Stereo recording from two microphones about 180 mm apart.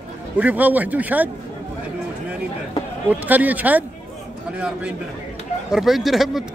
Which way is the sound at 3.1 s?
10° right (ahead or behind).